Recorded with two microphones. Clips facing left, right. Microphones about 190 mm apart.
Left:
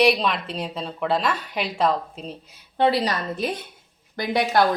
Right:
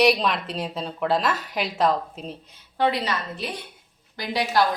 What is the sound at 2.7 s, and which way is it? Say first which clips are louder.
Speech: left 3 dB; 30° left (ahead or behind).